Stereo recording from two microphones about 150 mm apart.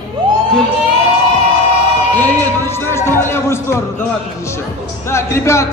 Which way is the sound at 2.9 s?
15° left (ahead or behind).